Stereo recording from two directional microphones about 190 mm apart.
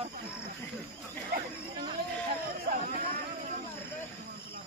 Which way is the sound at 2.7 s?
50° right (ahead or behind).